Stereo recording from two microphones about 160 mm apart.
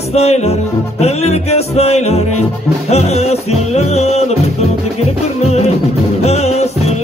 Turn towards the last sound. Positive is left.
turn(degrees=40)  # may be behind; listen again after turning